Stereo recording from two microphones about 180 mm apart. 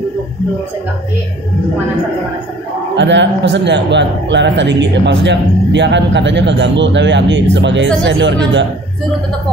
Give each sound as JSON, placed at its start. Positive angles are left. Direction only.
{"t": 3.0, "sound": "speech", "side_deg": -80}